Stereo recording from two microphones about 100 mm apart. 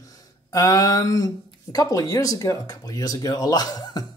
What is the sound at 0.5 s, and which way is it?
Speech, 35° left (ahead or behind).